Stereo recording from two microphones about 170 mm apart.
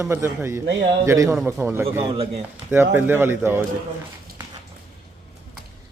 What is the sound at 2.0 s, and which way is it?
Speech, 35° right (ahead or behind).